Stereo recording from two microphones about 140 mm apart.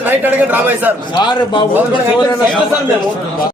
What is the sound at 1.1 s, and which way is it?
Speech, 35° left (ahead or behind).